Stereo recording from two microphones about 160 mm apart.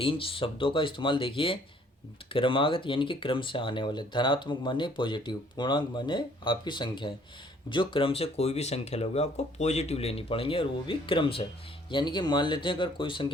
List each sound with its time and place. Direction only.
0.0 s speech: 35° left (ahead or behind)